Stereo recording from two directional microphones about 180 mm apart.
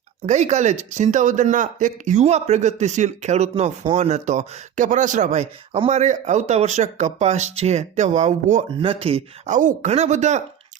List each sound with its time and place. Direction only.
0.3 s speech: 40° right (ahead or behind)
9.6 s speech: 45° right (ahead or behind)